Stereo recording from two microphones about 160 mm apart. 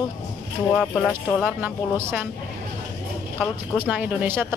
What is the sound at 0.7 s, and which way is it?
Speech, 5° left (ahead or behind).